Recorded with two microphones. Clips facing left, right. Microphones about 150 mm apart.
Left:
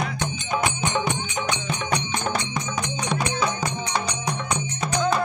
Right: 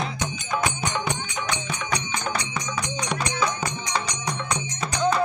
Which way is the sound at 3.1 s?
10° left (ahead or behind).